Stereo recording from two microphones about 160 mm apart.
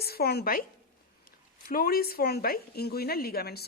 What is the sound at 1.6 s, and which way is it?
Speech, 70° left (ahead or behind).